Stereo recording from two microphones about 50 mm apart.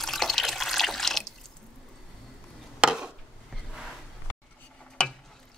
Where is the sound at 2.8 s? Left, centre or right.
Centre.